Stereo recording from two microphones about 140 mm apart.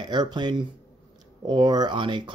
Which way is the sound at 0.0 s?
30° right (ahead or behind).